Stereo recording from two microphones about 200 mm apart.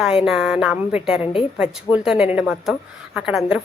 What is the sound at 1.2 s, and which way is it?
Speech, 25° left (ahead or behind).